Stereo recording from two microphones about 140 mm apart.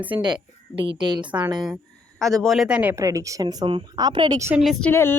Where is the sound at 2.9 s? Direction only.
20° right (ahead or behind).